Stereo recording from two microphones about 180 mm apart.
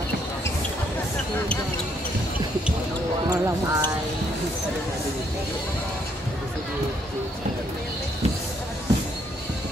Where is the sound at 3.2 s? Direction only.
20° right (ahead or behind).